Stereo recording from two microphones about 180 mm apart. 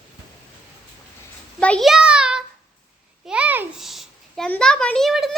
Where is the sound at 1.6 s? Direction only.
5° left (ahead or behind).